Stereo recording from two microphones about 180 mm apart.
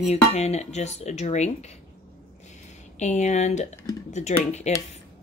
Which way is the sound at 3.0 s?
40° left (ahead or behind).